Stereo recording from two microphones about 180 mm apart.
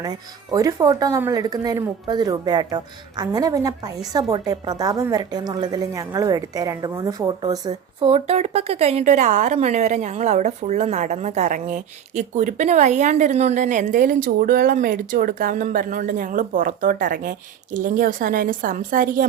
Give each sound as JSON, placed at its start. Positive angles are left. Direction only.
{"t": 0.0, "sound": "a woman's voice", "side_deg": -20}